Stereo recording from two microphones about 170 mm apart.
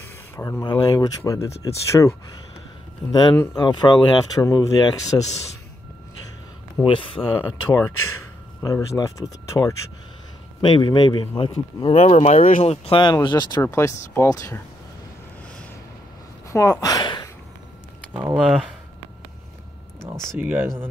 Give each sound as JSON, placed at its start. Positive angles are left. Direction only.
{"t": 0.4, "sound": "speech", "side_deg": 20}
{"t": 6.8, "sound": "speech", "side_deg": 30}
{"t": 8.6, "sound": "speech", "side_deg": 20}
{"t": 16.4, "sound": "a sound", "side_deg": 20}
{"t": 18.1, "sound": "speech", "side_deg": -10}
{"t": 20.3, "sound": "speech", "side_deg": -10}